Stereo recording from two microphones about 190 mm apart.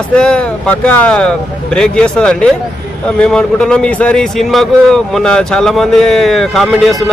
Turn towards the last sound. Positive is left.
turn(degrees=0)  # may be behind; listen again after turning